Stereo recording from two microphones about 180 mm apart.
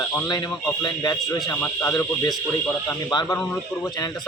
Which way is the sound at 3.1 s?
25° left (ahead or behind).